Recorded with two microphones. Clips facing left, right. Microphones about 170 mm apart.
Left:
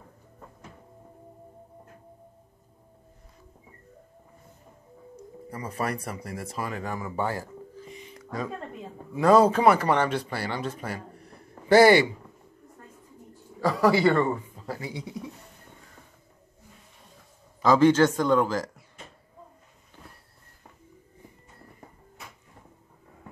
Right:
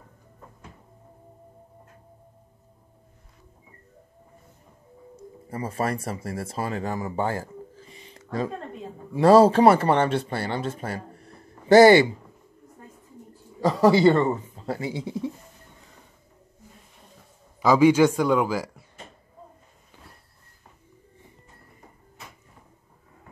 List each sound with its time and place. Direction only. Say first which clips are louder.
5.1 s speech: right 4 dB; 30° right (ahead or behind)
7.9 s a sound: right 4 dB; 30° right (ahead or behind)
9.1 s speech: right 4 dB; 30° right (ahead or behind)
13.6 s speech: right 4 dB; 25° right (ahead or behind)
17.6 s speech: right 2 dB; 10° right (ahead or behind)